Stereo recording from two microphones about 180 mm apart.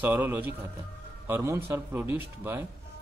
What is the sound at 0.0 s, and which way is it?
A man's voice, 10° right (ahead or behind).